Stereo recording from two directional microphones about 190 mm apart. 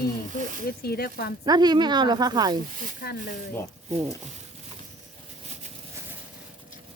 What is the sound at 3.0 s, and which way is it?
Speech, 55° left (ahead or behind).